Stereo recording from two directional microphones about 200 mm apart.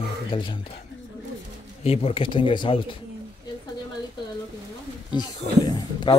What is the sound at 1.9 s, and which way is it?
Speech, 30° left (ahead or behind).